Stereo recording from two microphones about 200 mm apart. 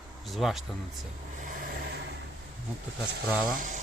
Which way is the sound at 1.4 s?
50° right (ahead or behind).